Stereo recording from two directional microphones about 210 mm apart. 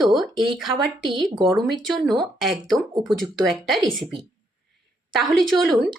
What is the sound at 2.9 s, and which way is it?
Speech, 20° right (ahead or behind).